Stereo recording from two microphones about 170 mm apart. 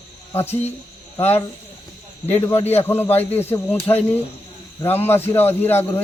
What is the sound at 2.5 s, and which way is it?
Speech, 35° left (ahead or behind).